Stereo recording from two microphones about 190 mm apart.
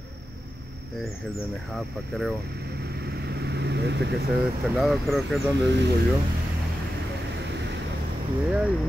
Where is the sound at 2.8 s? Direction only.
55° right (ahead or behind).